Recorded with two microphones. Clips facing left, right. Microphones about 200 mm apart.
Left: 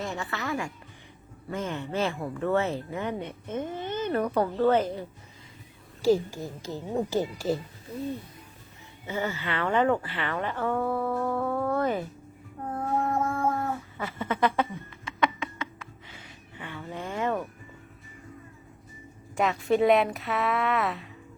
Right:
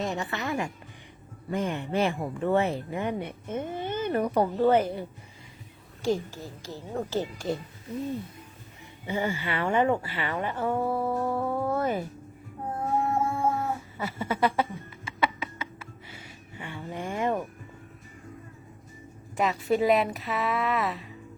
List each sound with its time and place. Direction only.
0.0 s a woman's voice: 20° right (ahead or behind)
6.0 s speech: 5° left (ahead or behind)
6.4 s speech: 20° left (ahead or behind)
9.0 s speech: 15° right (ahead or behind)
13.0 s cat: 10° right (ahead or behind)
19.4 s a woman's voice: centre (ahead or behind)